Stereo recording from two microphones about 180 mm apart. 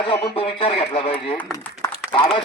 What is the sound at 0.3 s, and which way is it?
Speech, 30° left (ahead or behind).